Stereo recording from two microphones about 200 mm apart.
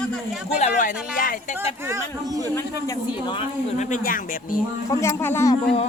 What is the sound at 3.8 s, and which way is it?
Speech, 40° left (ahead or behind).